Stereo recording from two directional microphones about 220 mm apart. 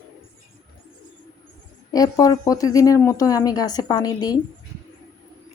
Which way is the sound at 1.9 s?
15° left (ahead or behind).